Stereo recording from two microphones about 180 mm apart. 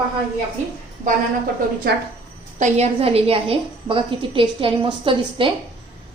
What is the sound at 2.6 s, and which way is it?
A woman's voice, 40° right (ahead or behind).